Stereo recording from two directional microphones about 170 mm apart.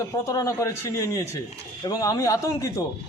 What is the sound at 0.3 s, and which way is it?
A man's voice, 20° left (ahead or behind).